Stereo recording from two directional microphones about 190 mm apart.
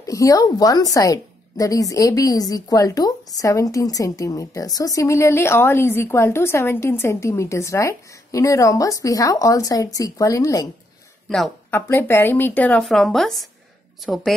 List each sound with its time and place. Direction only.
0.0 s a woman's voice: 15° left (ahead or behind)
11.2 s speech: centre (ahead or behind)
11.7 s a woman's voice: 10° left (ahead or behind)